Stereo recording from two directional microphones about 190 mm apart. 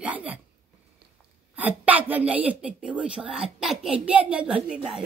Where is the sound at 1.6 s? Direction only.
10° right (ahead or behind).